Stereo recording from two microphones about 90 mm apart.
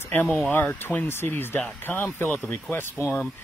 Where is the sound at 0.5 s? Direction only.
20° left (ahead or behind).